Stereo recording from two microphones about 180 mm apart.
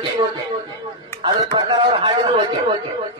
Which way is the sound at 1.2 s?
25° right (ahead or behind).